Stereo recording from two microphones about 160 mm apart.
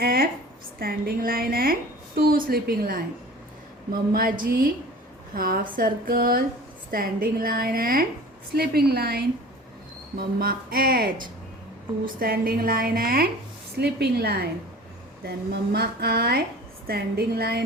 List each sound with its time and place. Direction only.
0.0 s a woman's voice: 65° right (ahead or behind)
4.1 s a woman's voice: 65° right (ahead or behind)
8.5 s a woman's voice: 80° right
10.2 s a woman's voice: 65° right (ahead or behind)
13.7 s a woman's voice: 90° right
15.7 s a woman's voice: 75° right (ahead or behind)